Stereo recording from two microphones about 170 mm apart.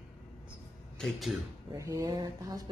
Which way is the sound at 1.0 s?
Centre (ahead or behind).